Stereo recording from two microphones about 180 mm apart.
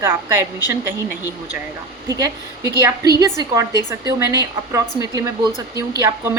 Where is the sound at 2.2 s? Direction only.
20° right (ahead or behind).